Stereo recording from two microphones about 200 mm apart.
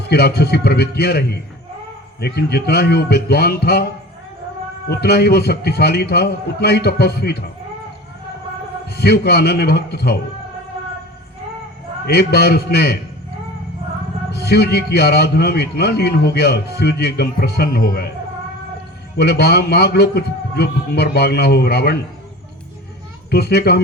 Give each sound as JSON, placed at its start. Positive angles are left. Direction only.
{"t": 0.0, "sound": "a man's voice", "side_deg": 55}
{"t": 4.9, "sound": "a man's voice", "side_deg": 55}
{"t": 8.9, "sound": "a man's voice", "side_deg": 55}
{"t": 12.0, "sound": "a man's voice", "side_deg": 50}
{"t": 14.3, "sound": "a man's voice", "side_deg": 55}
{"t": 19.1, "sound": "a man's voice", "side_deg": 55}
{"t": 23.3, "sound": "a man's voice", "side_deg": 55}